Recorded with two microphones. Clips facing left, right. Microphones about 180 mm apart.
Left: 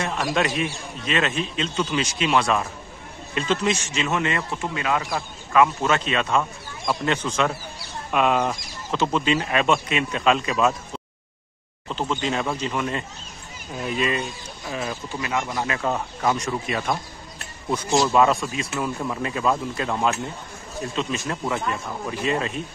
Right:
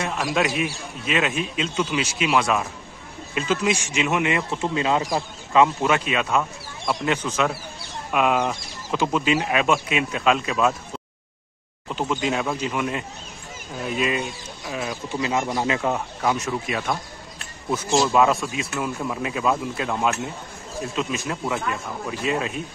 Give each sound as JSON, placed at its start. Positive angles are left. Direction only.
{"t": 0.0, "sound": "a man's voice", "side_deg": -10}
{"t": 11.9, "sound": "a man's voice", "side_deg": -10}
{"t": 15.1, "sound": "speech", "side_deg": -20}
{"t": 15.8, "sound": "speech", "side_deg": -5}